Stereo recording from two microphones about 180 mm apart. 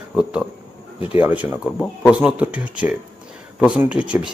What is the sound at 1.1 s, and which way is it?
Speech, 10° right (ahead or behind).